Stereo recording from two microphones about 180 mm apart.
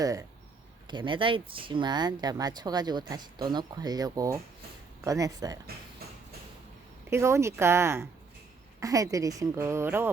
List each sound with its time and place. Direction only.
0.0 s speech: 20° right (ahead or behind)
7.1 s speech: 15° right (ahead or behind)